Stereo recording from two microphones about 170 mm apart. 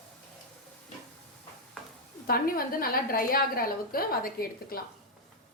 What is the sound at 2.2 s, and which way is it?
A woman's voice, 60° left (ahead or behind).